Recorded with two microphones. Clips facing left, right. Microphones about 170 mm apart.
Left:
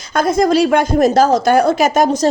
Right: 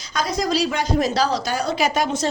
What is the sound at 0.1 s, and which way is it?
A woman's voice, 50° left (ahead or behind).